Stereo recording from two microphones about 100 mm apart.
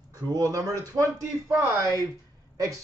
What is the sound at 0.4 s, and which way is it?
Speech, 35° right (ahead or behind).